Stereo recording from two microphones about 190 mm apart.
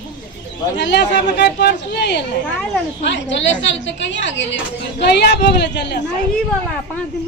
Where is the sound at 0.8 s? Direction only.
60° left (ahead or behind).